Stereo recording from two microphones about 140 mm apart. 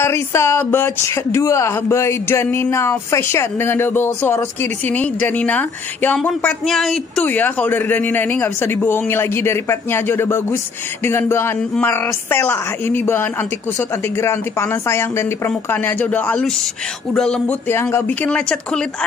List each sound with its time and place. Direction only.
0.0 s speech: 20° left (ahead or behind)
17.6 s speech: 15° left (ahead or behind)